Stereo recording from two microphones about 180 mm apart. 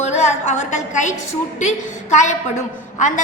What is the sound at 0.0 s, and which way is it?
A woman's voice, 40° left (ahead or behind).